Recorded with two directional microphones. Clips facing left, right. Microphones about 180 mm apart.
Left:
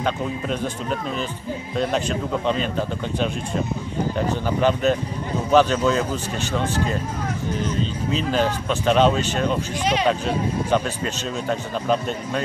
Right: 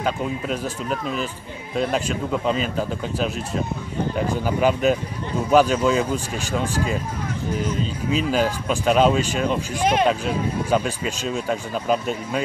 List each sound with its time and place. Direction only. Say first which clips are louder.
0.0 s speech: even; 5° right (ahead or behind)
4.3 s speech: right 1 dB; 10° right (ahead or behind)
9.8 s speech: right 5 dB; 50° right (ahead or behind)
10.7 s speech: right 2 dB; 10° right (ahead or behind)